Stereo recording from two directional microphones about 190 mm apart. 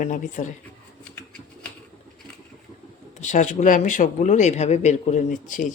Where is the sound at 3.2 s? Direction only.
40° left (ahead or behind).